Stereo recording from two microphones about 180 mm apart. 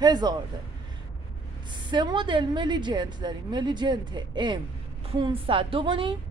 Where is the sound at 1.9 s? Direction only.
25° right (ahead or behind).